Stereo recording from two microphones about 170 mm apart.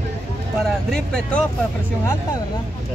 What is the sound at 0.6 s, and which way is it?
Speech, 5° left (ahead or behind).